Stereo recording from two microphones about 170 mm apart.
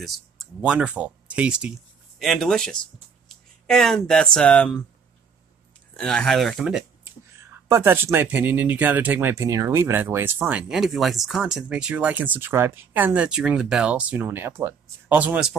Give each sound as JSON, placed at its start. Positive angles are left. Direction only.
{"t": 0.6, "sound": "speech", "side_deg": -5}
{"t": 5.9, "sound": "speech", "side_deg": 5}
{"t": 7.6, "sound": "speech", "side_deg": -15}
{"t": 10.7, "sound": "speech", "side_deg": 0}